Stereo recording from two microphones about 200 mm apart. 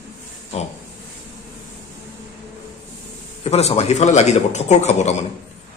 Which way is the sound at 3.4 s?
30° left (ahead or behind).